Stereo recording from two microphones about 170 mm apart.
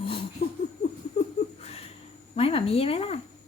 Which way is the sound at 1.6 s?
35° left (ahead or behind).